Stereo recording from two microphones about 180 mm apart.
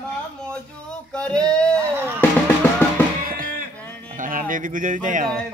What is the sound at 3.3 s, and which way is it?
Music, 50° right (ahead or behind).